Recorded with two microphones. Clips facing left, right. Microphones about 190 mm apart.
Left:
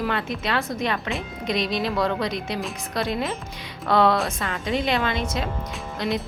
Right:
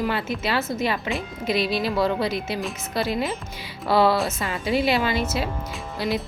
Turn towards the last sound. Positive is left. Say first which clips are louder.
# even
turn(degrees=-5)  # may be behind; listen again after turning